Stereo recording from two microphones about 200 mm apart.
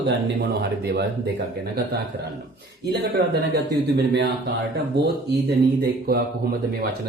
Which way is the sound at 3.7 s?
60° right (ahead or behind).